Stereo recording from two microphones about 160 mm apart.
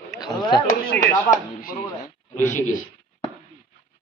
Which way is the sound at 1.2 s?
65° left (ahead or behind).